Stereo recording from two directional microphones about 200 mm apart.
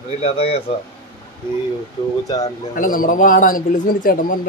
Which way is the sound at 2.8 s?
40° left (ahead or behind).